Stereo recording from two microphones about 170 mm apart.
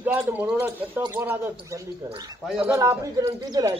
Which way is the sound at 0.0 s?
10° right (ahead or behind).